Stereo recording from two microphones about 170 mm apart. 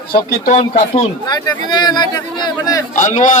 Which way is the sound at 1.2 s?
20° left (ahead or behind).